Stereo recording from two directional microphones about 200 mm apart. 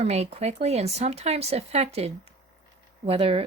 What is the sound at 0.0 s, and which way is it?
Speech, 30° right (ahead or behind).